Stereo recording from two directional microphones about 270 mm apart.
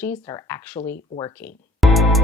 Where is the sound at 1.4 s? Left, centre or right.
Centre.